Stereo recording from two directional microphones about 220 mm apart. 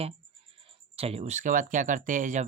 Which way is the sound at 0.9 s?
25° right (ahead or behind).